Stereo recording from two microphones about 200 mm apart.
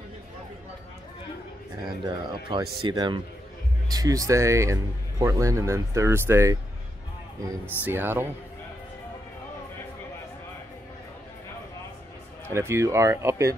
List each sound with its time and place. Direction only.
2.0 s speech: 25° right (ahead or behind)
12.5 s speech: 15° right (ahead or behind)